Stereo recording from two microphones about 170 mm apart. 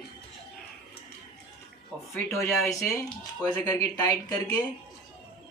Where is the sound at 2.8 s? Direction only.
5° left (ahead or behind).